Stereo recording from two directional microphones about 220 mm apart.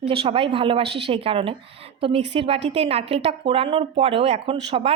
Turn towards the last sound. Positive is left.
turn(degrees=-25)  # may be behind; listen again after turning